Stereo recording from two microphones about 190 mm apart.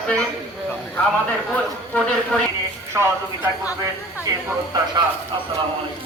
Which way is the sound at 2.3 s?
5° left (ahead or behind).